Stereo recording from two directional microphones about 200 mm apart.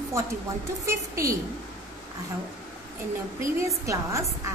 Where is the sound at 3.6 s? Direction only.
15° right (ahead or behind).